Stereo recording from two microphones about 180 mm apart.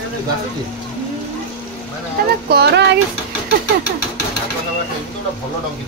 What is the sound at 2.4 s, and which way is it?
Speech, 65° right (ahead or behind).